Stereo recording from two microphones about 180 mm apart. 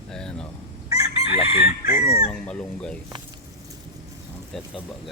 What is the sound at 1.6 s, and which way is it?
Chicken, 55° left (ahead or behind).